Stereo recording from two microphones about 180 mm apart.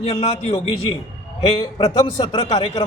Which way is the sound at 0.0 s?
30° left (ahead or behind).